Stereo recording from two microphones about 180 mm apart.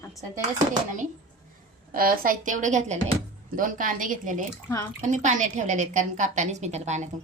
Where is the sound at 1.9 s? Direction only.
50° right (ahead or behind).